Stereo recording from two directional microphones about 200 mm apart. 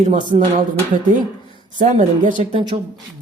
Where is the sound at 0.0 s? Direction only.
40° right (ahead or behind).